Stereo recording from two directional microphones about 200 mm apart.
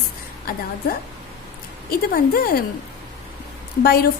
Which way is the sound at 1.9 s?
45° left (ahead or behind).